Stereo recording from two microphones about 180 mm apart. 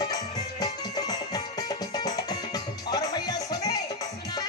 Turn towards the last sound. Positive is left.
turn(degrees=20)  # may be behind; listen again after turning